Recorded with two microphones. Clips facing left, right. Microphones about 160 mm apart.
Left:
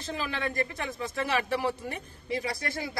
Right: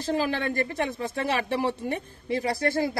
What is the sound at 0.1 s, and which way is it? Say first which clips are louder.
Speech: right 6 dB; 30° right (ahead or behind).